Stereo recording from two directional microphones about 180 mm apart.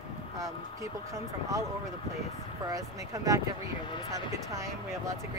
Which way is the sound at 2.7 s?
20° right (ahead or behind).